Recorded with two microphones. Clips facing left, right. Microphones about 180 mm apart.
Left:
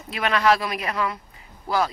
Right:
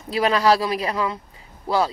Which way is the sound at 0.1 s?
30° right (ahead or behind).